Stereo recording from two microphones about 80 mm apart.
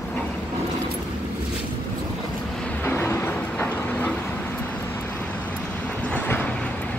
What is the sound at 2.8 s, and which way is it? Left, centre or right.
Vehicle, left.